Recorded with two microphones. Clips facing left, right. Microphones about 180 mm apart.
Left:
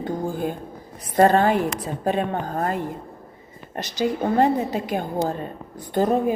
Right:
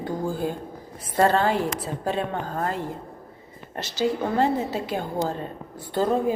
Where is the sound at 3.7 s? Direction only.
15° left (ahead or behind).